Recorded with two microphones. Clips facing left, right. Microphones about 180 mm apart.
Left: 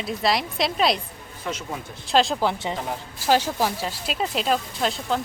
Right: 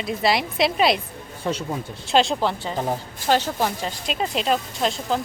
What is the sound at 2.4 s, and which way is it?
A woman's voice, 10° left (ahead or behind).